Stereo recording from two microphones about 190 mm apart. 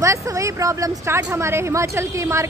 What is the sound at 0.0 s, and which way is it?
Speech, 15° right (ahead or behind).